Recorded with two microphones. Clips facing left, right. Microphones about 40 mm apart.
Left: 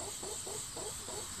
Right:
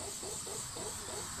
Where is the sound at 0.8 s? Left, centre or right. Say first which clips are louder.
Right 1 dB; right.